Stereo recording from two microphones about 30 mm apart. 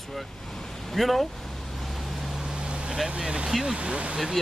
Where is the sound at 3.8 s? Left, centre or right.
Right.